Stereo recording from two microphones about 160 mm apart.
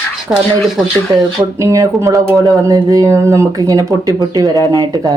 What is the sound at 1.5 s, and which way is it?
Speech, 20° right (ahead or behind).